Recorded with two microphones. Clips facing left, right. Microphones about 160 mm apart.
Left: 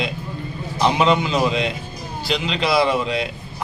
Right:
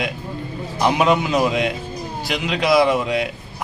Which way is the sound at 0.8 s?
10° right (ahead or behind).